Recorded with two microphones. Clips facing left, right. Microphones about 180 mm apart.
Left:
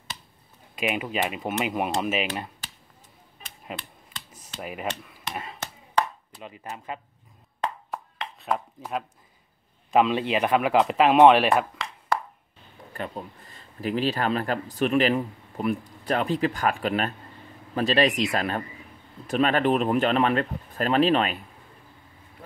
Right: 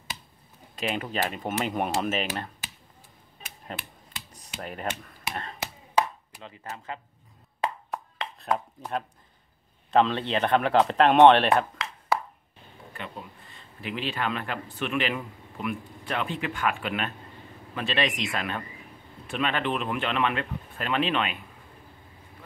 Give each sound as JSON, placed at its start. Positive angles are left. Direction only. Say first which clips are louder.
{"t": 0.7, "sound": "speech", "louder": "left 2 dB", "side_deg": 10}
{"t": 3.7, "sound": "speech", "louder": "left 2 dB", "side_deg": 5}
{"t": 5.3, "sound": "a sound", "louder": "left 1 dB", "side_deg": 5}
{"t": 6.4, "sound": "speech", "louder": "left 2 dB", "side_deg": 15}
{"t": 7.6, "sound": "chopping", "louder": "even", "side_deg": 0}
{"t": 9.8, "sound": "speech", "louder": "left 2 dB", "side_deg": 10}
{"t": 12.9, "sound": "speech", "louder": "left 6 dB", "side_deg": 40}